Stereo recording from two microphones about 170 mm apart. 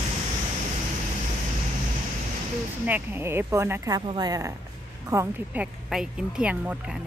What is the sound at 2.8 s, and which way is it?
Speech, 10° right (ahead or behind).